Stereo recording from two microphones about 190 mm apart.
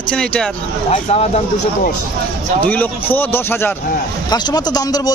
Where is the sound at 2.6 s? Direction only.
10° left (ahead or behind).